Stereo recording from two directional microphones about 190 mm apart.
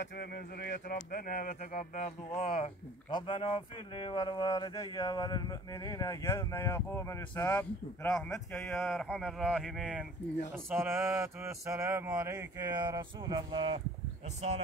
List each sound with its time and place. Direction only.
0.0 s speech: 55° left (ahead or behind); by 2.4 s 35° left (ahead or behind)
2.6 s speech: 25° left (ahead or behind); by 13.7 s 25° right (ahead or behind)